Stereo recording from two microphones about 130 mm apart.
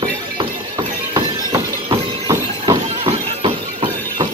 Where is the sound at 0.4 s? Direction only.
40° right (ahead or behind).